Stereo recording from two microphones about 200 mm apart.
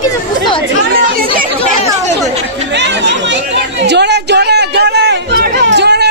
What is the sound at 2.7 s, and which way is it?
Chatter, 60° right (ahead or behind).